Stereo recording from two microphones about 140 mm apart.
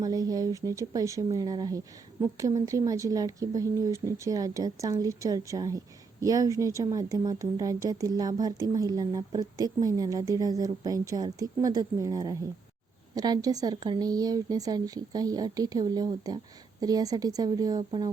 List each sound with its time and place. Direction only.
0.0 s speech: 25° right (ahead or behind)